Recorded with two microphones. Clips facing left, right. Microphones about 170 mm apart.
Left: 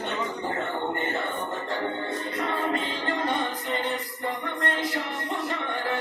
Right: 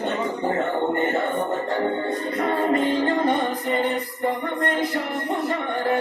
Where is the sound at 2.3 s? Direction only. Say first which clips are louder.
Right 7 dB; 45° right (ahead or behind).